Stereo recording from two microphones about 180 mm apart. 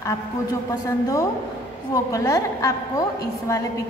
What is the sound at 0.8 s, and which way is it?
A woman's voice, 20° left (ahead or behind).